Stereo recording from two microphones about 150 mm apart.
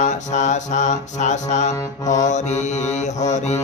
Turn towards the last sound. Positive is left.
turn(degrees=50)  # may be behind; listen again after turning